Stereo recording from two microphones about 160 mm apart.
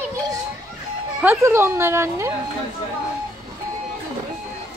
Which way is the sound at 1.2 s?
15° right (ahead or behind).